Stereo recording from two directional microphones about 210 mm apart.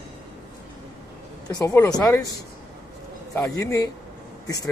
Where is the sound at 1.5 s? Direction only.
20° left (ahead or behind).